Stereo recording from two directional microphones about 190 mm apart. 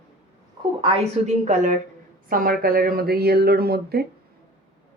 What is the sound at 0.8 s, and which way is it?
Speech, 35° right (ahead or behind).